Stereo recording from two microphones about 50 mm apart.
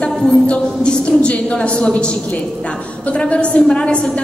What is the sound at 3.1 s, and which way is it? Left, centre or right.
A woman's voice, left.